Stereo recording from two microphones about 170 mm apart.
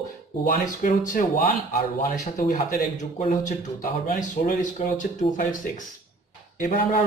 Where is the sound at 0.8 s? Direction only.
50° left (ahead or behind).